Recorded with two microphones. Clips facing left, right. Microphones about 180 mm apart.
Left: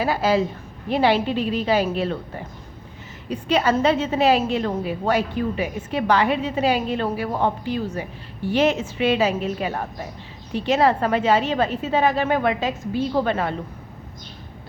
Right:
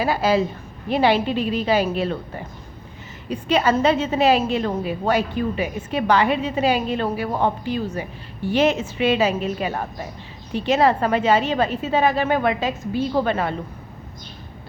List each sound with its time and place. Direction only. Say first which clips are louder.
0.0 s a woman's voice: right 1 dB; 10° right (ahead or behind)